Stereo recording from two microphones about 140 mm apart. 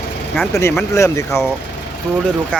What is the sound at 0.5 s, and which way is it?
Speech, 20° left (ahead or behind).